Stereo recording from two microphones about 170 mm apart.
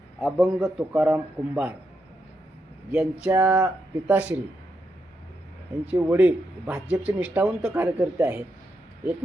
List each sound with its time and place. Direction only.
0.3 s a man's voice: 5° right (ahead or behind)
2.9 s a man's voice: 10° right (ahead or behind)
5.8 s a man's voice: 10° right (ahead or behind)
7.7 s a man's voice: 15° right (ahead or behind)